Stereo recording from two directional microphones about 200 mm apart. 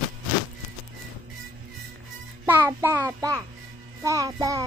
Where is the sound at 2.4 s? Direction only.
10° right (ahead or behind).